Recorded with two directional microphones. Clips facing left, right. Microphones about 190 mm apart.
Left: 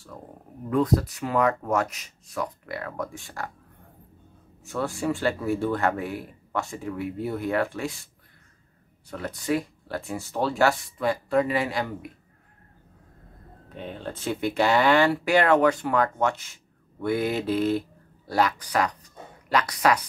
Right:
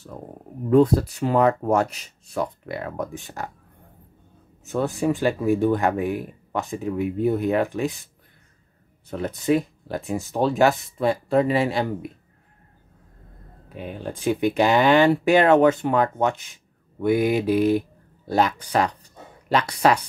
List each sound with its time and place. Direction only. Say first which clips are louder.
0.7 s speech: right 6 dB; 30° right (ahead or behind)
4.6 s speech: right 5 dB; 20° right (ahead or behind)
9.1 s speech: right 5 dB; 20° right (ahead or behind)
13.7 s speech: right 3 dB; 10° right (ahead or behind); by 20.0 s 30° right (ahead or behind)